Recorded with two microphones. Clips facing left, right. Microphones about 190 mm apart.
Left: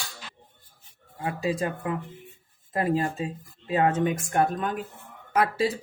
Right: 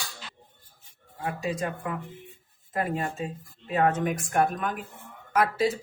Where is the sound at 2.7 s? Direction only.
30° left (ahead or behind).